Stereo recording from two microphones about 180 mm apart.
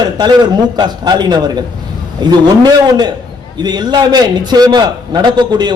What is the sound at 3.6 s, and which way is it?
A man's voice, 25° right (ahead or behind).